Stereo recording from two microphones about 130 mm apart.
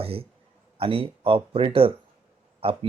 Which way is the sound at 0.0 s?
45° right (ahead or behind).